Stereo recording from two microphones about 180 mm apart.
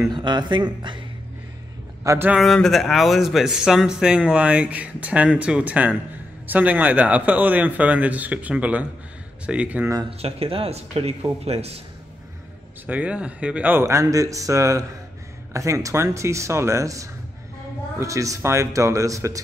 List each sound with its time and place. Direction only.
0.1 s speech: 25° right (ahead or behind)
2.0 s a man's voice: 10° right (ahead or behind)
2.4 s a man's voice: centre (ahead or behind)
9.9 s speech: 30° right (ahead or behind)
12.8 s a man's voice: 10° right (ahead or behind)